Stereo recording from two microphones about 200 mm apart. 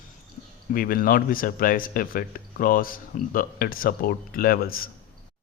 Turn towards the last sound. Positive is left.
turn(degrees=45)  # may be behind; listen again after turning